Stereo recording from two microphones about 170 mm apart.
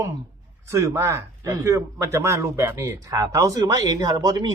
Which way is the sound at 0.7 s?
15° right (ahead or behind).